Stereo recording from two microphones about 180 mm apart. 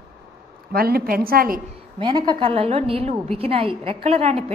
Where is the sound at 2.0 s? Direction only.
25° right (ahead or behind).